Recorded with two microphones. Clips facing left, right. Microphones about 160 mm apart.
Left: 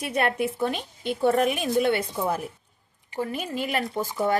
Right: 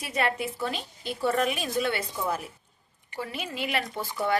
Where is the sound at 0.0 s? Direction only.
55° left (ahead or behind).